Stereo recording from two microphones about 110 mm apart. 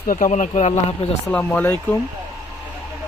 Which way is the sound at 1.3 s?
15° left (ahead or behind).